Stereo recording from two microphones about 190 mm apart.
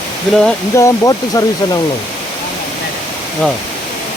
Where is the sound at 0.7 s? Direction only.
15° left (ahead or behind).